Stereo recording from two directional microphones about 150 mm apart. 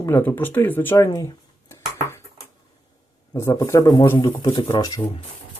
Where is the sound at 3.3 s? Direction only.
20° left (ahead or behind).